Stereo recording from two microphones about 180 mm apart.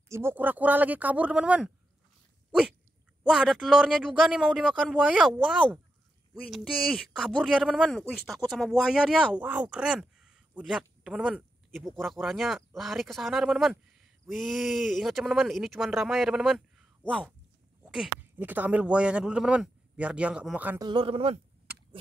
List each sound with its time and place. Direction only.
0.1 s a man's voice: 10° right (ahead or behind)
3.3 s a man's voice: centre (ahead or behind)
20.8 s speech: 30° right (ahead or behind)